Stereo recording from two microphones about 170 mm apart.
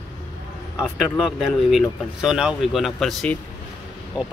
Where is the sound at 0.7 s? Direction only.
5° right (ahead or behind).